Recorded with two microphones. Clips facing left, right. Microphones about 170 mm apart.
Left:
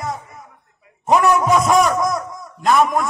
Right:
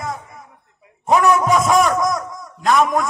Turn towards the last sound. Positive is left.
turn(degrees=0)  # may be behind; listen again after turning